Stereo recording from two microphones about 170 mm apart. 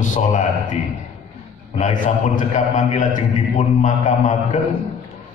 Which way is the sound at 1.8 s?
50° left (ahead or behind).